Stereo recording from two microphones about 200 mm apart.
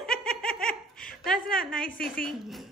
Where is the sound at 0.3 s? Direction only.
45° left (ahead or behind).